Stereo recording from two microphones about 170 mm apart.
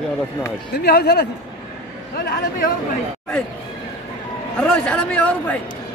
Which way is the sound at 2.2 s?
65° left (ahead or behind).